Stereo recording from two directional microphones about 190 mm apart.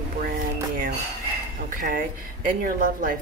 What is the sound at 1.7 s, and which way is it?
A woman's voice, 45° right (ahead or behind).